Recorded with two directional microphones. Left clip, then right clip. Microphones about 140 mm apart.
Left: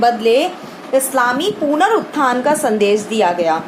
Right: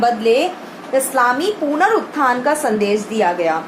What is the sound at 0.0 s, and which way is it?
A woman's voice, 40° left (ahead or behind).